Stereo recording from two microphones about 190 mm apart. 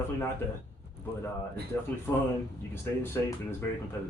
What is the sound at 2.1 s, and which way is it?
Speech, 10° left (ahead or behind).